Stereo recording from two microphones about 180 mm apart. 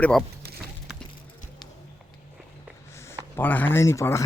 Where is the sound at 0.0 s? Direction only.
5° left (ahead or behind).